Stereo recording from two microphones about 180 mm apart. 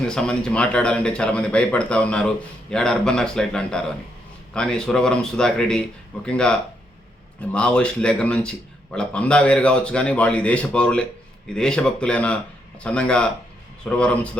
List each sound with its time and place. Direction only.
0.0 s a man's voice: 5° left (ahead or behind)